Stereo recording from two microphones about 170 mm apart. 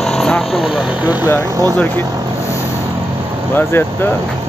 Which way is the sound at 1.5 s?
20° right (ahead or behind).